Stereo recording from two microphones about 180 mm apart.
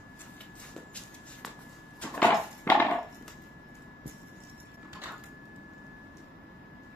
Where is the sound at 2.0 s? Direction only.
10° left (ahead or behind).